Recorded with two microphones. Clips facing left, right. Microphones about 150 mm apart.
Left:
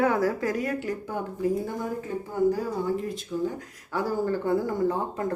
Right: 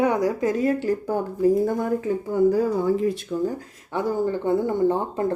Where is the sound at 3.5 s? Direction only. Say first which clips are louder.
Right 2 dB; 20° right (ahead or behind).